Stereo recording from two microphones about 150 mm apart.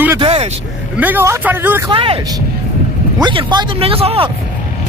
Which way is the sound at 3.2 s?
30° right (ahead or behind).